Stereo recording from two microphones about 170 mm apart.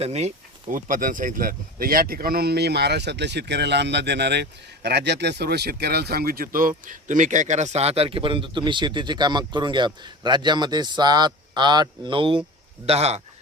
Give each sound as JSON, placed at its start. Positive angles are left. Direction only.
{"t": 0.0, "sound": "speech", "side_deg": -40}